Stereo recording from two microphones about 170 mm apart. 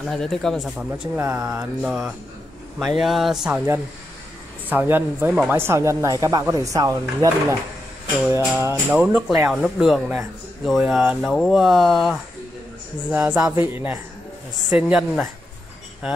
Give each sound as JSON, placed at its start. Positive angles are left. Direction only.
{"t": 0.1, "sound": "speech", "side_deg": 5}
{"t": 4.6, "sound": "speech", "side_deg": -10}
{"t": 8.5, "sound": "speech", "side_deg": -10}